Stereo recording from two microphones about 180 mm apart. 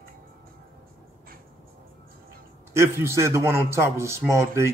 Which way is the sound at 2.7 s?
15° right (ahead or behind).